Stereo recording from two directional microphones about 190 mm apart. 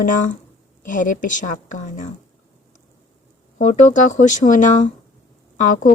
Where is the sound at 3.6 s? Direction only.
40° left (ahead or behind).